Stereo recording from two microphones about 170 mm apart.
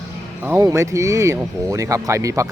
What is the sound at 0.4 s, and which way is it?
Speech, 15° right (ahead or behind).